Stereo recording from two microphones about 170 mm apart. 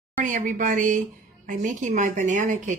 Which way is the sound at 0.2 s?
50° right (ahead or behind).